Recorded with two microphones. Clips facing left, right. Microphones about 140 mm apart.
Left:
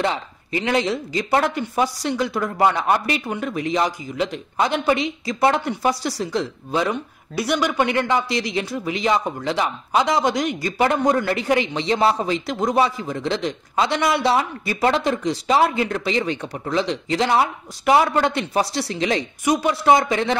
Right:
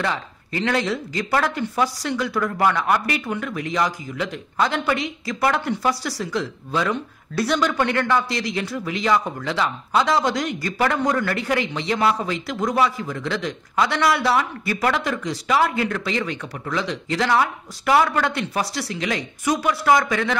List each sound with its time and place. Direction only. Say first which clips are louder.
0.0 s speech: left 2 dB; 20° left (ahead or behind)